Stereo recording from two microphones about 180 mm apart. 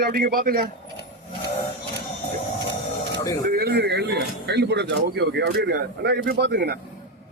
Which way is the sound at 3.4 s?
55° right (ahead or behind).